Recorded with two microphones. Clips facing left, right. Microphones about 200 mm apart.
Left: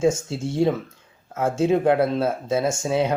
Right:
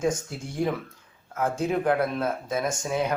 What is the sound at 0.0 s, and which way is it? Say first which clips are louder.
Speech: left 6 dB; 25° left (ahead or behind).